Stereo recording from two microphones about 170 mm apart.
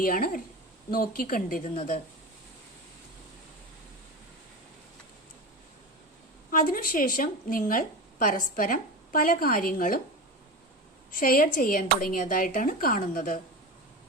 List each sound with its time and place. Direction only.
0.0 s speech: 55° left (ahead or behind)
6.5 s speech: 55° left (ahead or behind)
11.1 s speech: 55° left (ahead or behind)